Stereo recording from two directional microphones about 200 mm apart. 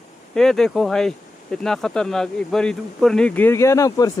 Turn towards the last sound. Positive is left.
turn(degrees=15)  # may be behind; listen again after turning